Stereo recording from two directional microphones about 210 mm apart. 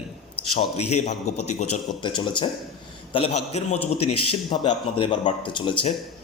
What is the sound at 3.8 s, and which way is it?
Speech, 90° left.